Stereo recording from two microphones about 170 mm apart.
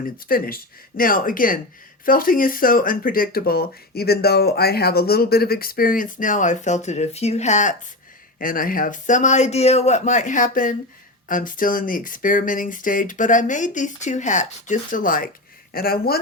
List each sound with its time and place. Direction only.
0.3 s speech: 60° left (ahead or behind)
8.4 s speech: 55° left (ahead or behind)